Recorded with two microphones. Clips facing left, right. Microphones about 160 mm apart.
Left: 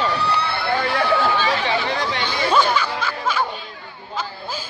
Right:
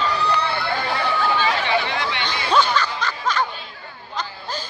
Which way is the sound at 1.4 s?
35° left (ahead or behind).